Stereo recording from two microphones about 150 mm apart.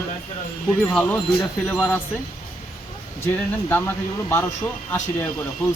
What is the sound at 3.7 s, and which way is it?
Speech, 15° left (ahead or behind).